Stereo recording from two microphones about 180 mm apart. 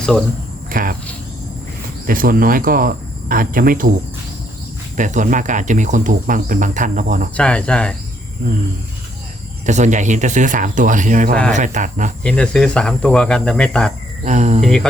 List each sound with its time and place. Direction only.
0.7 s cricket: 50° right (ahead or behind)
2.0 s speech: 50° right (ahead or behind)
4.9 s speech: 45° right (ahead or behind)
7.3 s speech: 5° left (ahead or behind)
9.6 s speech: 40° right (ahead or behind)
12.2 s speech: 5° left (ahead or behind)
14.3 s speech: 40° right (ahead or behind)
14.6 s speech: centre (ahead or behind)